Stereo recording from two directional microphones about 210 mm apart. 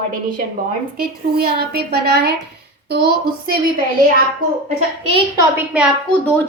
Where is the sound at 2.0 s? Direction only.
50° right (ahead or behind).